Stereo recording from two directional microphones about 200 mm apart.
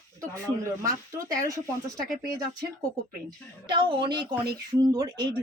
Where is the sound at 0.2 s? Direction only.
15° right (ahead or behind).